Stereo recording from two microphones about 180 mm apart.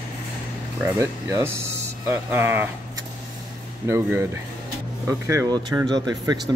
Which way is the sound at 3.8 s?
15° right (ahead or behind).